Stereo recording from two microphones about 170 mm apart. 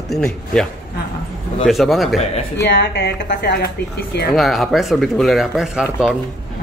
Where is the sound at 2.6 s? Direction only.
90° left.